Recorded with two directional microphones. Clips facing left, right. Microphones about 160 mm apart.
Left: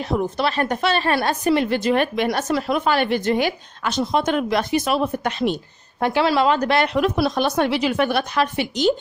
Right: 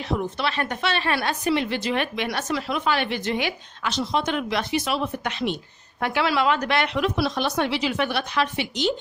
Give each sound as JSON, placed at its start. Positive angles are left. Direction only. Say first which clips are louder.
{"t": 0.0, "sound": "a woman's voice", "louder": "left 4 dB", "side_deg": 40}